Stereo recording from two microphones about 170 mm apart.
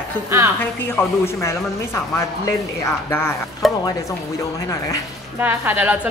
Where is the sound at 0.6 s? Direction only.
15° left (ahead or behind).